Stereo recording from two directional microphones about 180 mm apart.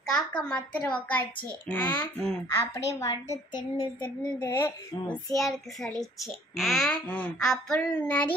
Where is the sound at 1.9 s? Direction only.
10° left (ahead or behind).